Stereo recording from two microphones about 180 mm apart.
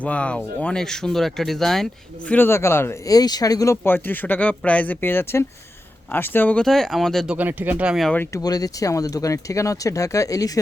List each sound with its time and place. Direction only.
0.0 s speech: 5° left (ahead or behind)
7.3 s speech: 10° right (ahead or behind); by 10.6 s 20° left (ahead or behind)